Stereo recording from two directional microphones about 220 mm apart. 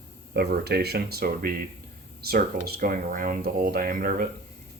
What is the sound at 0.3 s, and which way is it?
Speech, 45° right (ahead or behind).